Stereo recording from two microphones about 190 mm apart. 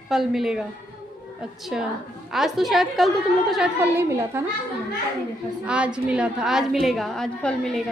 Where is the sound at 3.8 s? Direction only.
15° right (ahead or behind).